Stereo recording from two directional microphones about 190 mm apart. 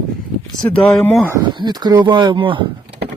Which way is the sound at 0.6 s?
5° left (ahead or behind).